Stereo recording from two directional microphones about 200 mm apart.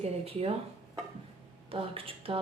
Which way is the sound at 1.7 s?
30° right (ahead or behind).